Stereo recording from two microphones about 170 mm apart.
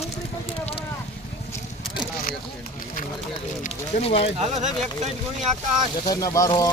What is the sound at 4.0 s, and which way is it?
Speech, 35° left (ahead or behind).